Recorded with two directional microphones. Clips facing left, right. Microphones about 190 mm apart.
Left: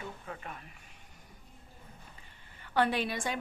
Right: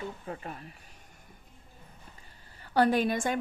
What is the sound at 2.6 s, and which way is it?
Speech, 40° right (ahead or behind).